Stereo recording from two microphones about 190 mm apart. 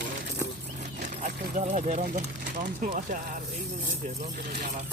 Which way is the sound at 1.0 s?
40° right (ahead or behind).